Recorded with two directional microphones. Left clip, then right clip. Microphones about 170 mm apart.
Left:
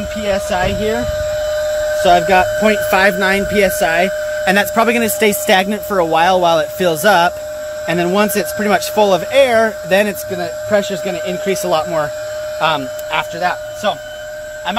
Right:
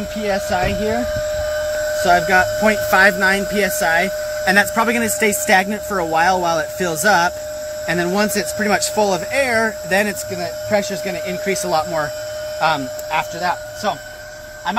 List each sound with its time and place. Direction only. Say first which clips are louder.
2.0 s speech: left 3 dB; 50° left (ahead or behind)